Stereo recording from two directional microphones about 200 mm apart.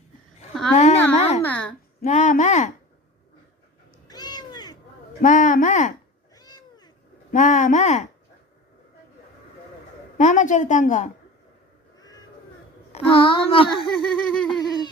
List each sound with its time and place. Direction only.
0.8 s a sound: 35° left (ahead or behind)
1.5 s a sound: 5° left (ahead or behind)
2.0 s speech: 35° left (ahead or behind)
4.1 s cat: 20° left (ahead or behind)
5.2 s a woman's voice: 40° left (ahead or behind)
6.3 s cat: 20° left (ahead or behind)
7.3 s a woman's voice: 40° left (ahead or behind)
10.2 s a woman's voice: 40° left (ahead or behind)
11.9 s crow: 20° left (ahead or behind)
12.9 s a child's voice: 25° left (ahead or behind)
13.8 s a sound: centre (ahead or behind)
14.6 s a sound: 20° left (ahead or behind)